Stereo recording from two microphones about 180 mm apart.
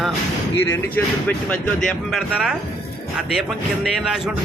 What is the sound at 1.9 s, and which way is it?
Speech, centre (ahead or behind).